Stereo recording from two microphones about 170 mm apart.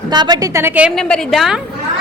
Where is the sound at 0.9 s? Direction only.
Centre (ahead or behind).